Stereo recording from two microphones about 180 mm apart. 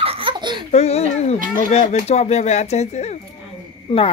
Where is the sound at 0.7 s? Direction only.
35° left (ahead or behind).